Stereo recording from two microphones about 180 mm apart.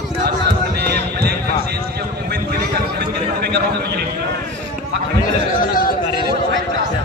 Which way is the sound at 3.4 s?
65° right (ahead or behind).